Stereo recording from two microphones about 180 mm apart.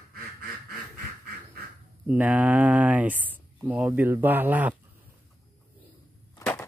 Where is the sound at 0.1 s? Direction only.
55° right (ahead or behind).